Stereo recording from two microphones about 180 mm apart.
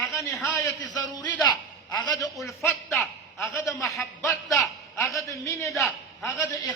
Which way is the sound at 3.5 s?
15° left (ahead or behind).